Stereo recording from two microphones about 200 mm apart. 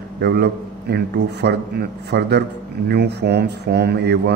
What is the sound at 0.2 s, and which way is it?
Speech, 55° right (ahead or behind).